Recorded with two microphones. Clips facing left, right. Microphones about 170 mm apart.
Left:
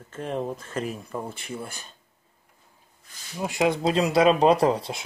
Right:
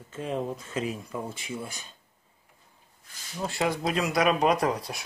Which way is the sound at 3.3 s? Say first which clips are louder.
Left 4 dB; 15° left (ahead or behind).